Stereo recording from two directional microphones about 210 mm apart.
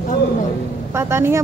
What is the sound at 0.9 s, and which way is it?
Speech, 10° right (ahead or behind).